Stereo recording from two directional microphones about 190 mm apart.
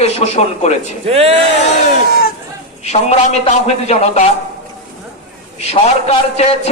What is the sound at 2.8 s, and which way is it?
A man's voice, 35° left (ahead or behind).